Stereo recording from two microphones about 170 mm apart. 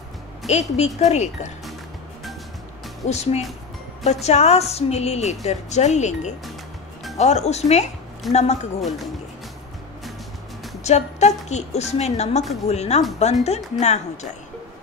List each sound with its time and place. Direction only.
0.5 s a woman's voice: 40° left (ahead or behind)
3.1 s a woman's voice: 40° left (ahead or behind)
8.8 s speech: centre (ahead or behind)
10.8 s a woman's voice: 40° left (ahead or behind)